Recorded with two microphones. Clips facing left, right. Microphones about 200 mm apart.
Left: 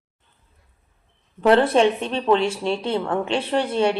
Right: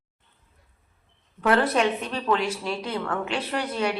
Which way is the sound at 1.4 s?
30° left (ahead or behind).